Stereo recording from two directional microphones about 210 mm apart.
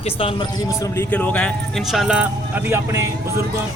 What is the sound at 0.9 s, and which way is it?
A man's voice, 10° left (ahead or behind).